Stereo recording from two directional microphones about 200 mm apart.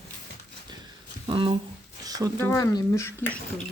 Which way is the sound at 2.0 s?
20° right (ahead or behind).